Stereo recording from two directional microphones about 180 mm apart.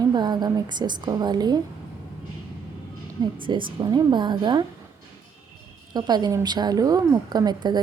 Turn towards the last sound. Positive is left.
turn(degrees=-25)  # may be behind; listen again after turning